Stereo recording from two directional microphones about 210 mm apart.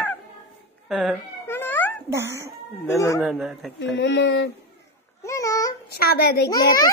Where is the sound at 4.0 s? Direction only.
60° left (ahead or behind).